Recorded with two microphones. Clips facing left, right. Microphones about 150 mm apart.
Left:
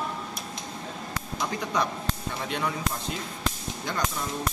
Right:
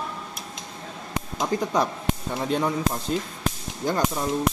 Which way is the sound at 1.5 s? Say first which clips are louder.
Right 11 dB; 40° right (ahead or behind).